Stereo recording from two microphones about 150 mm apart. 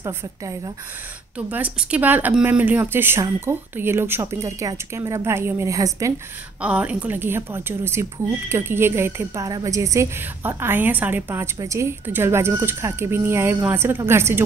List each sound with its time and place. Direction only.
1.5 s speech: 10° right (ahead or behind)
6.6 s speech: 10° right (ahead or behind)